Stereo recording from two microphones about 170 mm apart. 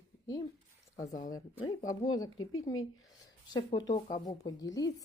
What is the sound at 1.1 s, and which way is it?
Speech, 50° left (ahead or behind).